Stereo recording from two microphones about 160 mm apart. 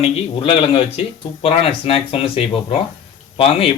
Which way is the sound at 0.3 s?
35° left (ahead or behind).